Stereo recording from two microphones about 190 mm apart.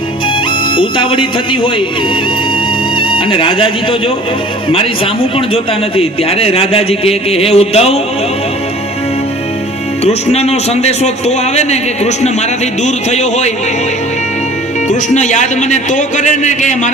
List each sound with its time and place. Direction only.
0.8 s speech: 25° left (ahead or behind)
3.0 s speech: 25° left (ahead or behind)
6.0 s a man's voice: 30° left (ahead or behind)
10.0 s a man's voice: 35° left (ahead or behind)
14.8 s a man's voice: 40° left (ahead or behind)